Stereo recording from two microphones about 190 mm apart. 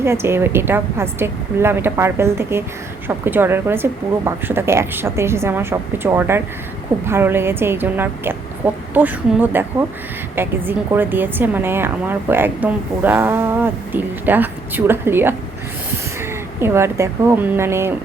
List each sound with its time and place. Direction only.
0.0 s a woman's voice: 15° right (ahead or behind)
16.6 s a woman's voice: 15° right (ahead or behind)